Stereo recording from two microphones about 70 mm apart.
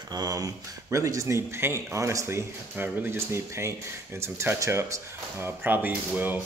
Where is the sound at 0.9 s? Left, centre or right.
Right.